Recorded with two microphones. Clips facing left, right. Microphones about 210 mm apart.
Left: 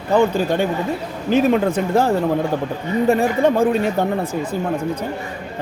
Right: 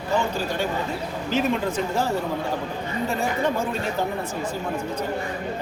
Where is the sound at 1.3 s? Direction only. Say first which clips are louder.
Left 8 dB; 55° left (ahead or behind).